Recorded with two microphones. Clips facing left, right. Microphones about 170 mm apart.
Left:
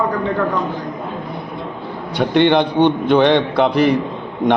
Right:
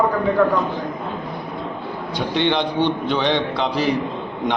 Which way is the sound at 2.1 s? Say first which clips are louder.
Left 7 dB; 55° left (ahead or behind).